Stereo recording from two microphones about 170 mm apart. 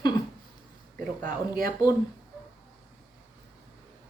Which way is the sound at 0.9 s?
55° right (ahead or behind).